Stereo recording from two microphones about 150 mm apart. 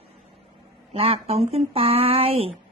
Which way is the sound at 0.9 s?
40° right (ahead or behind).